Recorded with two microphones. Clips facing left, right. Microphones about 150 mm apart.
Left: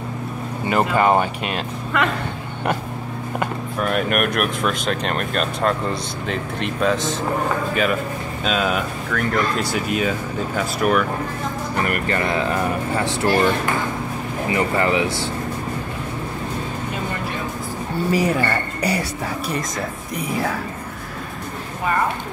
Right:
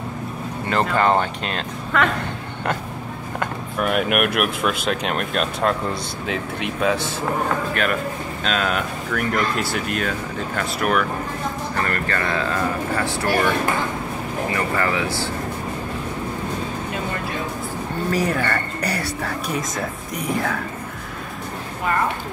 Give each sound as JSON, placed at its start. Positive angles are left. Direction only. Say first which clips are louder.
{"t": 0.7, "sound": "speech", "louder": "left 2 dB", "side_deg": 10}
{"t": 3.8, "sound": "speech", "louder": "right 1 dB", "side_deg": -5}
{"t": 11.7, "sound": "speech", "louder": "left 4 dB", "side_deg": 15}
{"t": 14.5, "sound": "speech", "louder": "left 5 dB", "side_deg": 20}
{"t": 18.1, "sound": "speech", "louder": "left 2 dB", "side_deg": 10}